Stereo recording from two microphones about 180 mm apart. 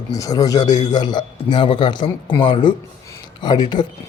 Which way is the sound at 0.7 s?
40° left (ahead or behind).